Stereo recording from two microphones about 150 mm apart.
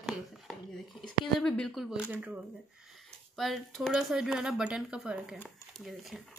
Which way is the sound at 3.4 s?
Centre (ahead or behind).